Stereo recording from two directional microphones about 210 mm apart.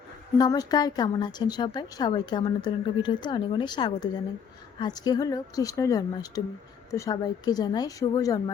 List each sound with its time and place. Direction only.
0.3 s speech: 20° left (ahead or behind)